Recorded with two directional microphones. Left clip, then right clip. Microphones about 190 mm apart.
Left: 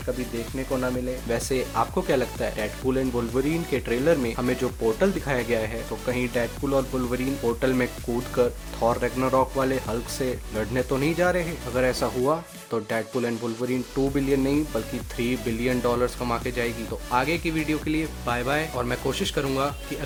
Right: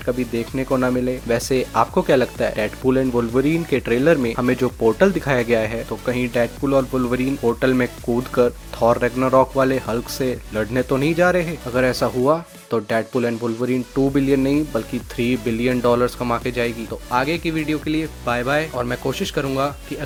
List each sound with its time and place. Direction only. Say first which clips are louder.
0.5 s speech: right 7 dB; 40° right (ahead or behind)
1.3 s speech: right 6 dB; 25° right (ahead or behind)